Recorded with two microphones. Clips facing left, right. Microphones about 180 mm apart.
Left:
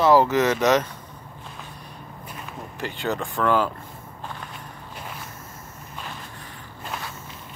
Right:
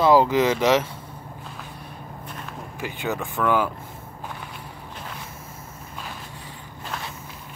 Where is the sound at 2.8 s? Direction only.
10° right (ahead or behind).